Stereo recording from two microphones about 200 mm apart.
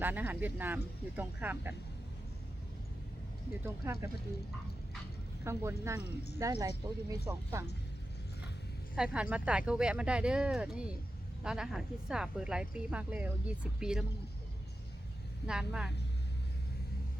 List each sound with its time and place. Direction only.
0.0 s speech: 10° right (ahead or behind)
3.8 s speech: 10° right (ahead or behind)
5.5 s speech: 15° right (ahead or behind)
9.0 s speech: 5° right (ahead or behind)
15.4 s speech: 5° right (ahead or behind)